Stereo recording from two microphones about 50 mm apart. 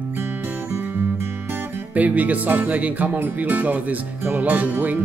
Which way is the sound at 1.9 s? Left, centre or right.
Right.